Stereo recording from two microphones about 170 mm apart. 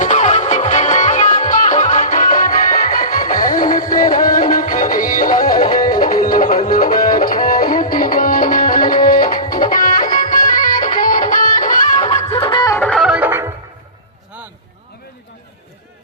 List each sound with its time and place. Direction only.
0.0 s music: 45° left (ahead or behind)
12.0 s music: 35° left (ahead or behind)
12.8 s music: 5° left (ahead or behind)